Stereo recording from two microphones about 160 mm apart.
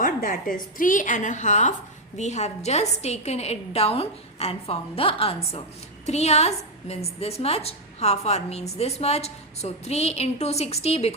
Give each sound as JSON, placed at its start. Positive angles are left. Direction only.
{"t": 0.0, "sound": "a woman's voice", "side_deg": 60}